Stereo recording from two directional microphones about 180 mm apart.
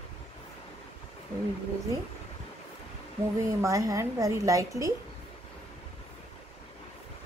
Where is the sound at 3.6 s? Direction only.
20° right (ahead or behind).